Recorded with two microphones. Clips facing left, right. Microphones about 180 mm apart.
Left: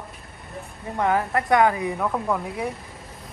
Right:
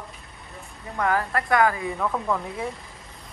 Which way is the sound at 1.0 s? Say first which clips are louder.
Left 2 dB; 20° left (ahead or behind).